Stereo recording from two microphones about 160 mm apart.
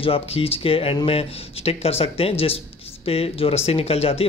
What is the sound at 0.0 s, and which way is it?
Speech, 35° left (ahead or behind).